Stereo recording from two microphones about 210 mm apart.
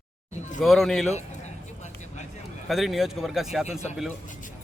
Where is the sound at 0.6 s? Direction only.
Centre (ahead or behind).